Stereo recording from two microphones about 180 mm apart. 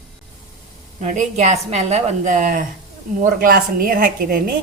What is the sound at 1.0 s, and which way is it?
A woman's voice, 40° right (ahead or behind).